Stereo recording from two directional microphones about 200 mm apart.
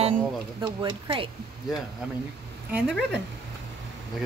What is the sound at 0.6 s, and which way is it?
Speech, 15° right (ahead or behind).